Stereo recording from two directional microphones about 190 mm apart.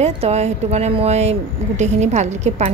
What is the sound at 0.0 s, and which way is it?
A woman's voice, 35° right (ahead or behind).